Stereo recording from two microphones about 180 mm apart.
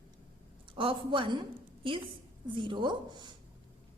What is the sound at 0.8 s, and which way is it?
A woman's voice, 30° right (ahead or behind).